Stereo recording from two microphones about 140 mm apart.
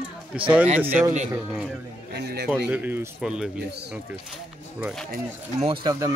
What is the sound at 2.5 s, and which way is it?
Speech, 10° right (ahead or behind).